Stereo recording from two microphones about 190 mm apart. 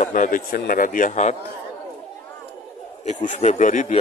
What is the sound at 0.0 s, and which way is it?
A man's voice, 45° left (ahead or behind).